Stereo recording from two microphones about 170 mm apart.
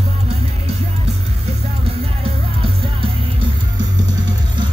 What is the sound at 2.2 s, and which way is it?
Music, 30° right (ahead or behind).